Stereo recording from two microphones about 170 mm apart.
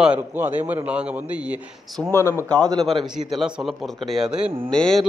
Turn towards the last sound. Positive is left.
turn(degrees=5)  # may be behind; listen again after turning